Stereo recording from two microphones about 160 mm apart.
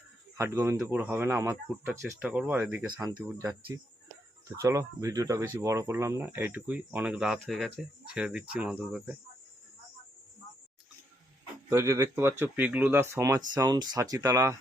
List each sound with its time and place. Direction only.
0.3 s speech: 15° right (ahead or behind)
11.7 s speech: 15° right (ahead or behind)